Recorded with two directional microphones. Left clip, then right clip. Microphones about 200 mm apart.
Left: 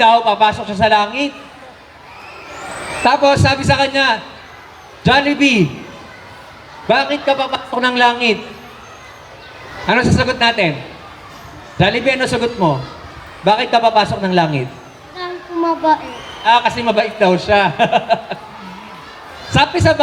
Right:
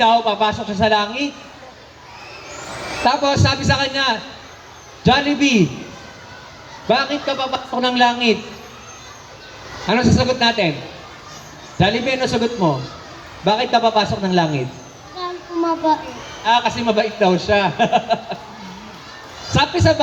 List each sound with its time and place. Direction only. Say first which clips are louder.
0.0 s a man's voice: left 4 dB; 50° left (ahead or behind)
3.0 s a man's voice: left 5 dB; 50° left (ahead or behind)
6.8 s a man's voice: left 4 dB; 50° left (ahead or behind)
9.8 s a man's voice: left 3 dB; 50° left (ahead or behind)
11.8 s a man's voice: left 3 dB; 50° left (ahead or behind)
15.2 s a sound: left 2 dB; 50° left (ahead or behind)
16.4 s a man's voice: left 4 dB; 50° left (ahead or behind)
19.5 s a man's voice: left 3 dB; 50° left (ahead or behind)